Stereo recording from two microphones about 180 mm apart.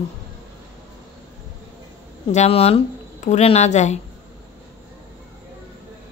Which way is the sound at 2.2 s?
35° left (ahead or behind).